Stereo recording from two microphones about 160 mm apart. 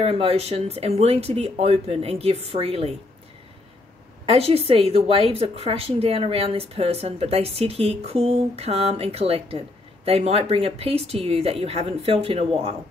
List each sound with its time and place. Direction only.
0.1 s a woman's voice: 40° right (ahead or behind)
4.3 s a woman's voice: 40° right (ahead or behind)